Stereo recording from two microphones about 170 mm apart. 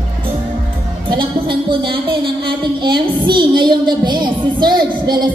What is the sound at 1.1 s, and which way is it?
Child singing, 30° right (ahead or behind).